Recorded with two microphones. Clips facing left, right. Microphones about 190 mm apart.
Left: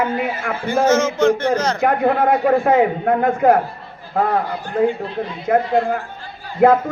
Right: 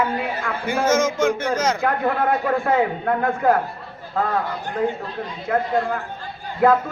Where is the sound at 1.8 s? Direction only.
25° left (ahead or behind).